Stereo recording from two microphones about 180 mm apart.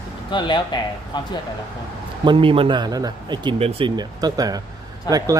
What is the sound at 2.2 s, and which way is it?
Speech, 30° right (ahead or behind).